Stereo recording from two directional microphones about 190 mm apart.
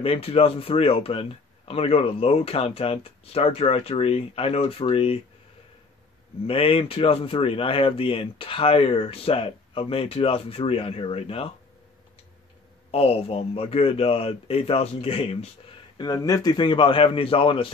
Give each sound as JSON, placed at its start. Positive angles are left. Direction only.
{"t": 0.0, "sound": "speech", "side_deg": 30}
{"t": 6.4, "sound": "speech", "side_deg": 30}
{"t": 12.9, "sound": "speech", "side_deg": 30}
{"t": 16.0, "sound": "speech", "side_deg": 20}